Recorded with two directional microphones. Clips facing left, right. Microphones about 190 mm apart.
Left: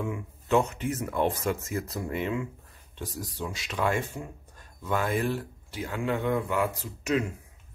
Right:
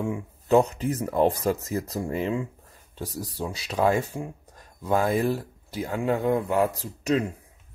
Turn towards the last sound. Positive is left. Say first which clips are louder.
# right 3 dB
turn(degrees=-35)  # may be behind; listen again after turning